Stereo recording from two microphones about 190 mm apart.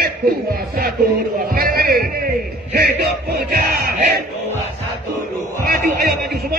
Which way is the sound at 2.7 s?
55° right (ahead or behind).